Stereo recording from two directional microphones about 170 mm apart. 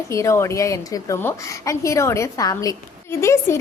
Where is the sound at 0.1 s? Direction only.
15° left (ahead or behind).